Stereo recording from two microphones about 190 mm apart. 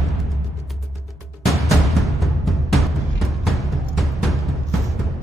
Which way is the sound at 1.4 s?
Centre (ahead or behind).